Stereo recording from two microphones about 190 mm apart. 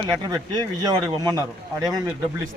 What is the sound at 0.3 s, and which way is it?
Speech, 20° right (ahead or behind).